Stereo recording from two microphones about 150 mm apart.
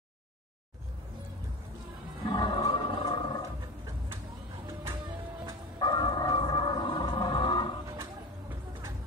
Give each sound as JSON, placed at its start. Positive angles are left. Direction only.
{"t": 2.2, "sound": "music", "side_deg": 30}
{"t": 5.8, "sound": "music", "side_deg": 30}
{"t": 7.9, "sound": "a sound", "side_deg": -20}